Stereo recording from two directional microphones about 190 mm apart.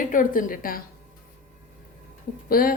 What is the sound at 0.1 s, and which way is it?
Speech, 45° left (ahead or behind).